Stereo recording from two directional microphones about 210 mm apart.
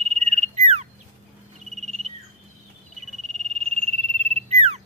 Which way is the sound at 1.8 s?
30° right (ahead or behind).